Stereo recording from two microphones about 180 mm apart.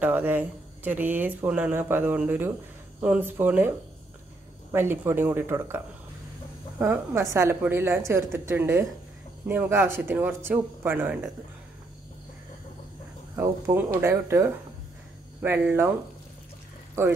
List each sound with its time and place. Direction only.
0.0 s speech: 10° right (ahead or behind)
4.7 s speech: 10° right (ahead or behind)
6.8 s speech: 15° right (ahead or behind)
13.4 s speech: 15° right (ahead or behind)